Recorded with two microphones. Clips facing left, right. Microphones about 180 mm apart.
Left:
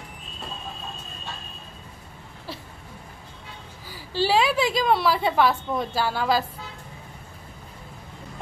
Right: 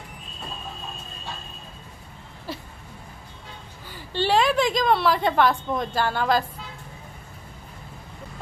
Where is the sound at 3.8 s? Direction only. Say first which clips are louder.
Left 1 dB; 5° left (ahead or behind).